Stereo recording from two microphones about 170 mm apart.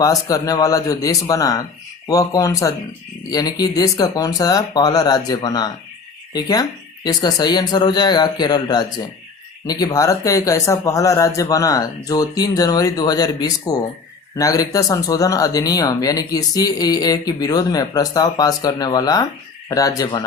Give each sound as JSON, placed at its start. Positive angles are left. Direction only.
{"t": 0.0, "sound": "speech", "side_deg": 20}